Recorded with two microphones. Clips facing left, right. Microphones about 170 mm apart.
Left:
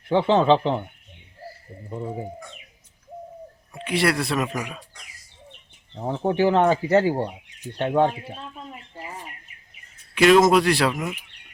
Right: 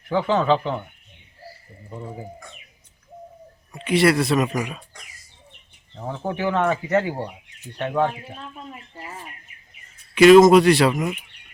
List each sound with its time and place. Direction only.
0.1 s speech: 25° left (ahead or behind)
3.8 s speech: centre (ahead or behind)
5.9 s speech: 25° left (ahead or behind)
9.0 s bird: 15° left (ahead or behind)
10.2 s speech: centre (ahead or behind)